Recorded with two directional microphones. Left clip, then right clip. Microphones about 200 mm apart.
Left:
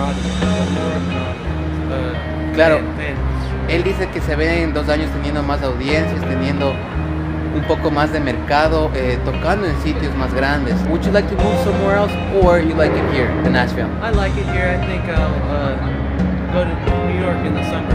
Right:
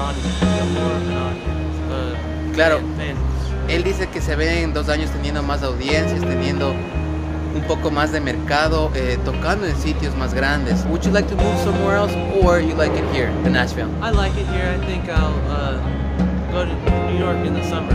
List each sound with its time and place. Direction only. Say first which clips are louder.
0.4 s music: even; centre (ahead or behind)
2.5 s speech: left 3 dB; 5° left (ahead or behind)
4.4 s speech: left 3 dB; 5° left (ahead or behind)
14.0 s speech: left 1 dB; 15° right (ahead or behind)